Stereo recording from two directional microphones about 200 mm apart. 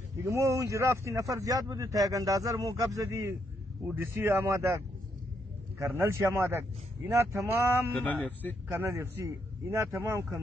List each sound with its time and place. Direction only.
0.2 s speech: 15° right (ahead or behind)
8.0 s speech: 5° left (ahead or behind)
8.6 s speech: 15° right (ahead or behind)